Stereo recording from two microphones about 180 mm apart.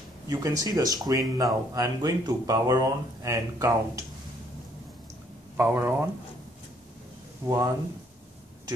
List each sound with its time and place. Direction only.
0.3 s speech: 20° right (ahead or behind)
5.6 s speech: 10° right (ahead or behind)
7.4 s speech: 20° right (ahead or behind)